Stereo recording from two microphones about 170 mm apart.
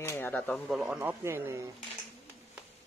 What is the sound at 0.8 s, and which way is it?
Speech, 5° right (ahead or behind).